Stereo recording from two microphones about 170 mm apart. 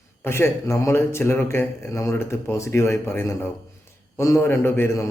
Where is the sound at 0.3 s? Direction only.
15° left (ahead or behind).